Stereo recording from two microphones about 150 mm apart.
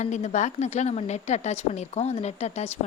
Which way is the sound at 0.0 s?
50° left (ahead or behind).